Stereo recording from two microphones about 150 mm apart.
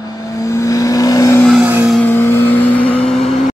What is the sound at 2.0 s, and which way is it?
Vehicle, 15° left (ahead or behind).